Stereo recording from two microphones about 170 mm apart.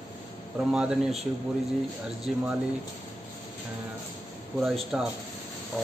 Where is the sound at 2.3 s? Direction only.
Centre (ahead or behind).